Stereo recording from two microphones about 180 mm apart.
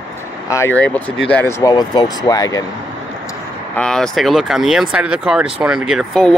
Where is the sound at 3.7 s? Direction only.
5° left (ahead or behind).